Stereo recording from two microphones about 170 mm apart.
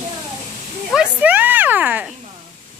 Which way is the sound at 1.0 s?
10° right (ahead or behind).